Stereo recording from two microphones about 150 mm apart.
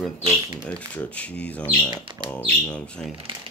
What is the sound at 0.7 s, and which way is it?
Speech, 10° left (ahead or behind).